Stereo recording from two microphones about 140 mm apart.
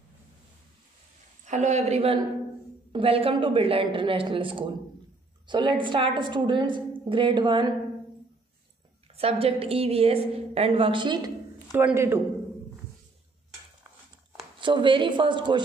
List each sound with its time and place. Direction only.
1.4 s a woman's voice: 60° right (ahead or behind); by 7.7 s 35° right (ahead or behind)
9.1 s a woman's voice: 45° right (ahead or behind)
11.7 s a man's voice: 15° right (ahead or behind)
14.6 s a woman's voice: 35° right (ahead or behind)